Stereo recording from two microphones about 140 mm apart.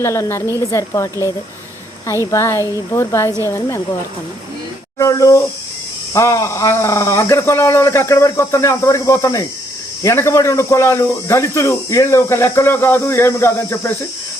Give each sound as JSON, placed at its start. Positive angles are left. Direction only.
{"t": 0.0, "sound": "speech", "side_deg": 20}
{"t": 2.2, "sound": "speech", "side_deg": 20}
{"t": 4.9, "sound": "speech", "side_deg": 25}